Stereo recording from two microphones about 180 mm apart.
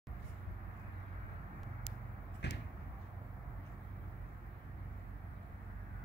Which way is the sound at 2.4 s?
70° left (ahead or behind).